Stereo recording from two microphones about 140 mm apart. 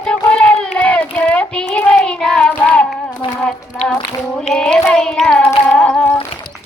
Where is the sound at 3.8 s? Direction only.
50° left (ahead or behind).